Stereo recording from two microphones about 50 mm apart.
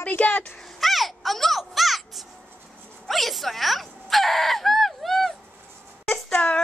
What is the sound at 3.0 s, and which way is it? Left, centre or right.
Fowl, centre.